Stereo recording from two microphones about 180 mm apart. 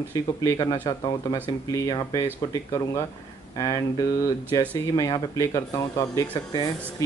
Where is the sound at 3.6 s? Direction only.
20° left (ahead or behind).